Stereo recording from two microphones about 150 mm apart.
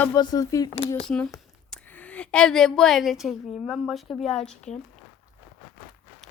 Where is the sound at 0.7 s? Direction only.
40° left (ahead or behind).